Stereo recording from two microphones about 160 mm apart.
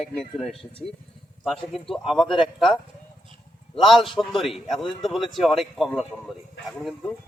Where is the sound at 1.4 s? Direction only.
Centre (ahead or behind).